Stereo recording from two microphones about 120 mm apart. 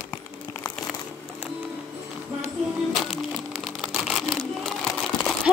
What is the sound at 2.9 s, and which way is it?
Music, centre (ahead or behind).